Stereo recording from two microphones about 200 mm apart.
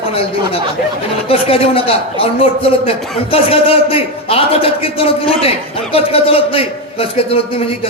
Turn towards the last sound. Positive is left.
turn(degrees=30)  # may be behind; listen again after turning